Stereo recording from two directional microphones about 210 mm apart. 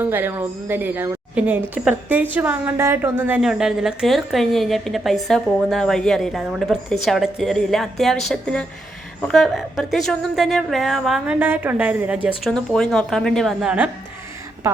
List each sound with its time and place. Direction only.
0.0 s a woman's voice: 10° right (ahead or behind)